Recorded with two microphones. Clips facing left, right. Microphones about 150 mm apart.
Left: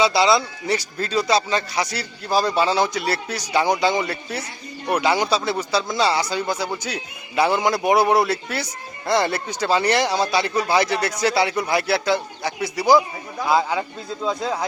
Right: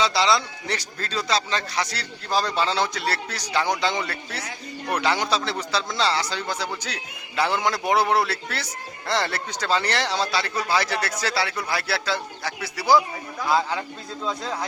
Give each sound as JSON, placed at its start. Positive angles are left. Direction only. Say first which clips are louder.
{"t": 0.0, "sound": "speech", "louder": "left 4 dB", "side_deg": 10}